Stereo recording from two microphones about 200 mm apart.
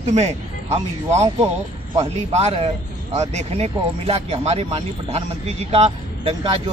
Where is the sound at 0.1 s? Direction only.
30° right (ahead or behind).